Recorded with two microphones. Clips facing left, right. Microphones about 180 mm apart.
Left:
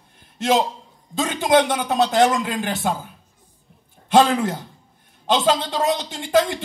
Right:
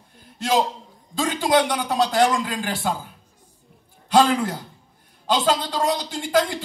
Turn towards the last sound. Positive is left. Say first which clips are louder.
# left 2 dB
turn(degrees=25)  # may be behind; listen again after turning